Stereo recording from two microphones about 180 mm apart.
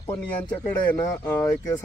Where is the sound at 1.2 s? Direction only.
15° left (ahead or behind).